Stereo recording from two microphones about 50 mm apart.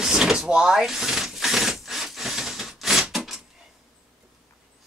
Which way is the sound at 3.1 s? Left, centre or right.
Centre.